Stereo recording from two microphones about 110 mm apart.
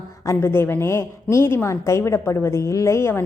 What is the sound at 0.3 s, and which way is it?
A woman's voice, 20° left (ahead or behind).